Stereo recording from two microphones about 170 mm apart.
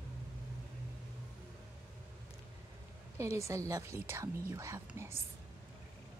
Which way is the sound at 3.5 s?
20° right (ahead or behind).